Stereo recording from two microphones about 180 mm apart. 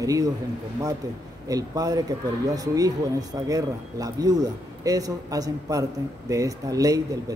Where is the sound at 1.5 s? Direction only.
20° right (ahead or behind).